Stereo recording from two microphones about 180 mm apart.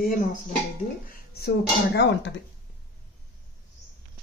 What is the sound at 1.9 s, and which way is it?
Speech, 75° left (ahead or behind).